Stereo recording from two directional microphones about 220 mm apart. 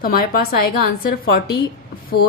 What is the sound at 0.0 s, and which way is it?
A woman's voice, 45° left (ahead or behind).